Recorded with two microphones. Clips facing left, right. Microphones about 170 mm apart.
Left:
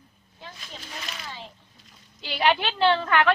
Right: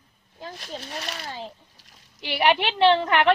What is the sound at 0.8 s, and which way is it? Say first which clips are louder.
Speech: right 2 dB; 40° right (ahead or behind).